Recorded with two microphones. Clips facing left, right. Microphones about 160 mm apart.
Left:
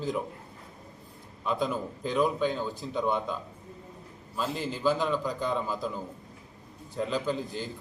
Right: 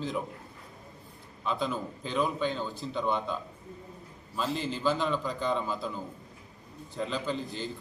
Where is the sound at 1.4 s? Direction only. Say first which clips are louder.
Left 2 dB; 5° left (ahead or behind).